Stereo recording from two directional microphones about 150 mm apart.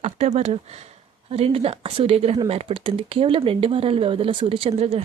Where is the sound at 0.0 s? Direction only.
45° right (ahead or behind).